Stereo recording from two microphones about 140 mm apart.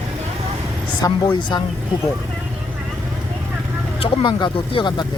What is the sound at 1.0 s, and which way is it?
Speech, 30° left (ahead or behind).